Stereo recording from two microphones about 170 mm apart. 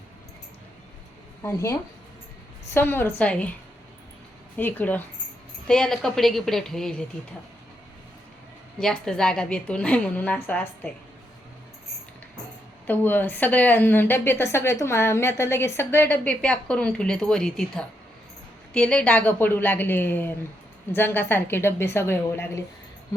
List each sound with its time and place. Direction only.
1.4 s speech: 15° left (ahead or behind)
2.7 s a woman's voice: 10° left (ahead or behind)
4.5 s a woman's voice: 10° left (ahead or behind)
8.8 s a woman's voice: 5° left (ahead or behind)
12.9 s a woman's voice: 10° left (ahead or behind)